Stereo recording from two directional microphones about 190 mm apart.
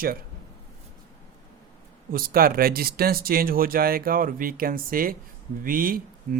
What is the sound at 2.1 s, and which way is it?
Speech, 50° right (ahead or behind).